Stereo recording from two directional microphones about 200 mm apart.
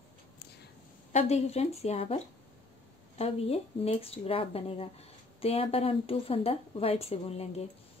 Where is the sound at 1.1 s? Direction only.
35° left (ahead or behind).